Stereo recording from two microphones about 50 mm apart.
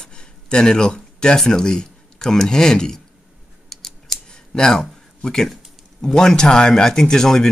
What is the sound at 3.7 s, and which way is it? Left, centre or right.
Typing, centre.